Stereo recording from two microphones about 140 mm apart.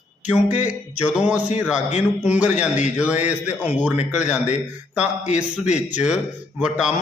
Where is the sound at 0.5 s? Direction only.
55° left (ahead or behind).